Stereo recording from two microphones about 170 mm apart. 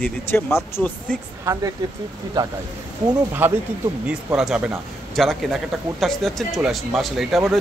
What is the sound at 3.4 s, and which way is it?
A man's voice, 10° right (ahead or behind).